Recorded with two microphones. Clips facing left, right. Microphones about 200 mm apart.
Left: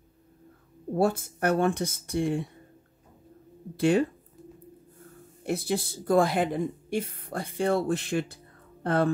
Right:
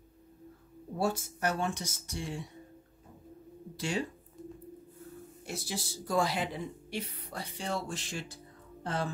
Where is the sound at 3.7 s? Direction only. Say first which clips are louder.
Left 11 dB; 55° left (ahead or behind).